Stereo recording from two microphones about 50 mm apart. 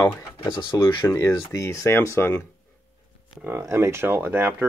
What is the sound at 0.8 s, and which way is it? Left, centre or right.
Speech, left.